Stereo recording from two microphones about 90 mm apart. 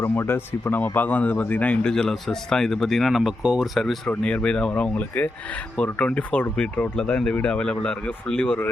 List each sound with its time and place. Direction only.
0.0 s a man's voice: 25° left (ahead or behind)